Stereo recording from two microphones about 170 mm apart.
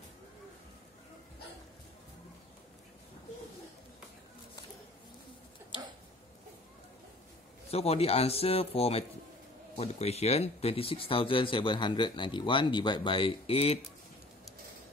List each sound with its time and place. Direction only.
7.7 s speech: 35° left (ahead or behind)